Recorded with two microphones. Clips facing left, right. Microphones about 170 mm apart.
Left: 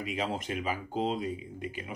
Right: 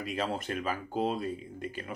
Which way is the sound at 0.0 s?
15° left (ahead or behind).